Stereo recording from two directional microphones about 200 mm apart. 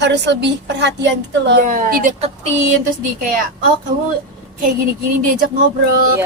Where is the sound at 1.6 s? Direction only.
40° right (ahead or behind).